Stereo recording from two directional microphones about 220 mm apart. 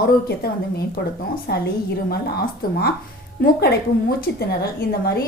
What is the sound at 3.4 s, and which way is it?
A woman's voice, 45° left (ahead or behind).